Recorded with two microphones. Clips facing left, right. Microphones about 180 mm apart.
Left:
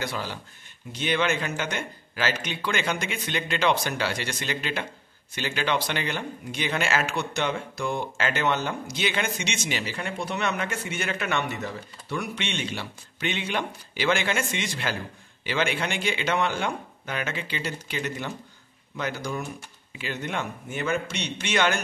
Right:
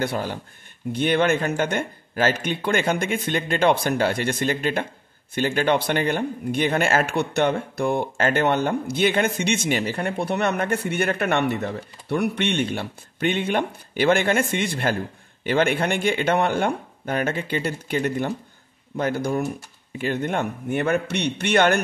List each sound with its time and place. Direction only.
0.0 s speech: 55° right (ahead or behind)